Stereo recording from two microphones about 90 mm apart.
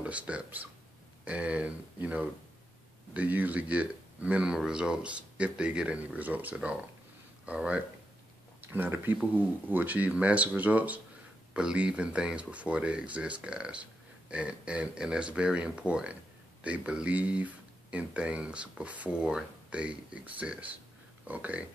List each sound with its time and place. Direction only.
0.0 s speech: 15° right (ahead or behind)